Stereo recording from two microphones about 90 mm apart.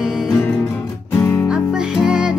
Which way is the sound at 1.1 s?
25° left (ahead or behind).